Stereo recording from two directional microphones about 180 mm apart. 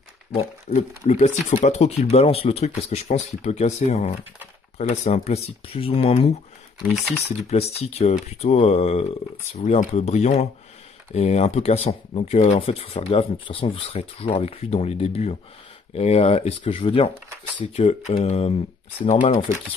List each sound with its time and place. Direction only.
0.7 s speech: 40° left (ahead or behind)